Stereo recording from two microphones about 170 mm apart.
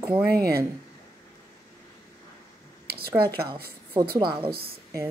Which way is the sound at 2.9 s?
65° right (ahead or behind).